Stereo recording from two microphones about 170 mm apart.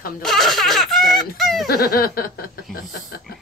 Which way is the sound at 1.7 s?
60° left (ahead or behind).